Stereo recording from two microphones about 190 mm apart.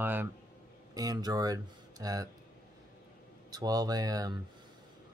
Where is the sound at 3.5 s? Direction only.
20° right (ahead or behind).